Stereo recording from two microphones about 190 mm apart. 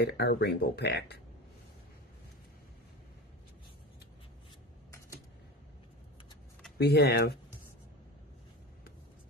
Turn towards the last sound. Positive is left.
turn(degrees=55)  # may be behind; listen again after turning